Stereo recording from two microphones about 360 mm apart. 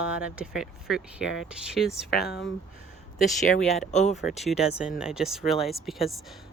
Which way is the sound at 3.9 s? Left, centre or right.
Centre.